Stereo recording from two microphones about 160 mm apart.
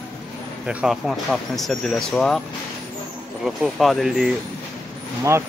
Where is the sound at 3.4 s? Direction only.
Centre (ahead or behind).